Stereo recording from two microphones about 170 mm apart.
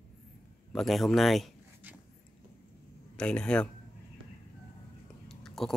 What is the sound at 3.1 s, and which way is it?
Speech, 5° left (ahead or behind).